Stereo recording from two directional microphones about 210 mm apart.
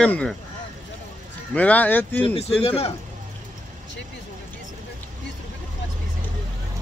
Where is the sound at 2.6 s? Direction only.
30° left (ahead or behind).